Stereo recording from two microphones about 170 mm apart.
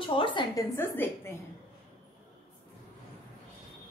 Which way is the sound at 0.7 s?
15° left (ahead or behind).